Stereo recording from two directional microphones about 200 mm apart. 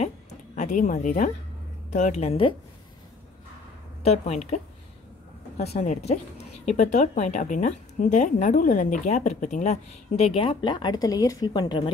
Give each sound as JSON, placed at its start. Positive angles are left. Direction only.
{"t": 0.0, "sound": "a woman's voice", "side_deg": 35}
{"t": 4.0, "sound": "a woman's voice", "side_deg": 35}
{"t": 5.6, "sound": "a woman's voice", "side_deg": 35}